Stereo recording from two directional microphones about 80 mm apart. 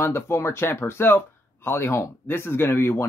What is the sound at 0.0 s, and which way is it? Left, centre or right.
Speech, left.